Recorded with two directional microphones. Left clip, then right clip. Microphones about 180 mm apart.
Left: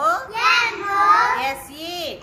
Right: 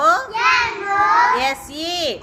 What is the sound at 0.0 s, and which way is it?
Child singing, 40° right (ahead or behind).